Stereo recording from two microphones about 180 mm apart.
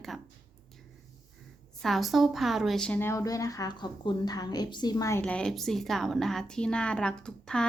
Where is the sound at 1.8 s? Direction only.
Centre (ahead or behind); by 5.2 s 20° left (ahead or behind).